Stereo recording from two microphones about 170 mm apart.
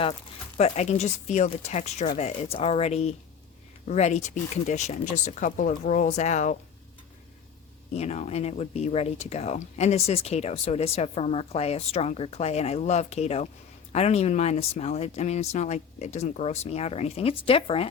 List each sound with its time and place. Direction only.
0.0 s speech: 40° left (ahead or behind)
7.9 s speech: 40° left (ahead or behind)